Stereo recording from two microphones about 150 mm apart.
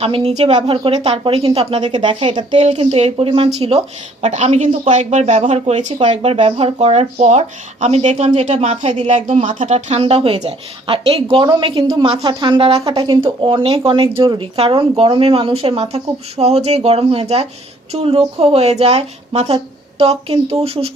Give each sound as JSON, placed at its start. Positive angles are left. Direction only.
{"t": 0.0, "sound": "a woman's voice", "side_deg": -40}
{"t": 2.6, "sound": "a woman's voice", "side_deg": -45}